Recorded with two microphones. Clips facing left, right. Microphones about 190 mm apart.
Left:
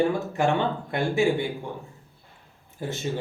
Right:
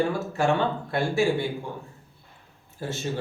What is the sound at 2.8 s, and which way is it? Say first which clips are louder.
Speech: left 1 dB; 15° left (ahead or behind).